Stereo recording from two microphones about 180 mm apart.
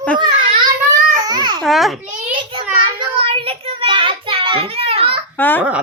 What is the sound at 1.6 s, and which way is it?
Speech, centre (ahead or behind).